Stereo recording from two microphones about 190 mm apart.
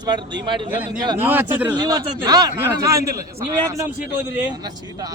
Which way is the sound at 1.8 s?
20° right (ahead or behind).